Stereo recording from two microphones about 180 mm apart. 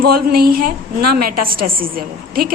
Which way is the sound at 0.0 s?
55° right (ahead or behind).